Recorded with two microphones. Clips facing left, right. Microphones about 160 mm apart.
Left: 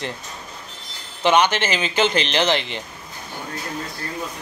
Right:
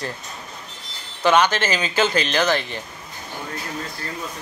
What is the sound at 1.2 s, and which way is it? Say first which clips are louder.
Speech: even; 20° left (ahead or behind).